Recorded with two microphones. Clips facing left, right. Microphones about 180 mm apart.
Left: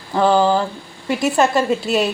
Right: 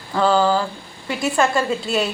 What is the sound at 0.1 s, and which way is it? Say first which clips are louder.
Speech: left 2 dB; 20° left (ahead or behind).